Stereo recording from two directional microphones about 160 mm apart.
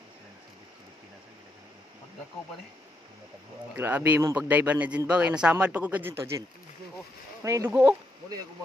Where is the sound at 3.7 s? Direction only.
10° right (ahead or behind).